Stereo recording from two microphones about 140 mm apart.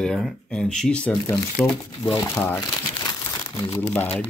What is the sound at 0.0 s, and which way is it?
Speech, 5° left (ahead or behind).